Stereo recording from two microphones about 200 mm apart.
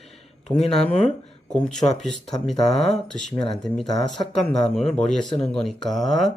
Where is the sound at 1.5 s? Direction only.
5° left (ahead or behind).